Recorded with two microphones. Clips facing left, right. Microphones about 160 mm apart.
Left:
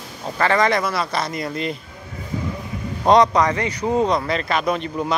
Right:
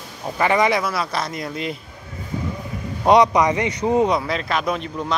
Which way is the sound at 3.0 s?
10° right (ahead or behind).